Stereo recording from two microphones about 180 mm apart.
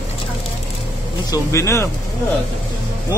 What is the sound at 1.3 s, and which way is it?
Speech, 15° left (ahead or behind).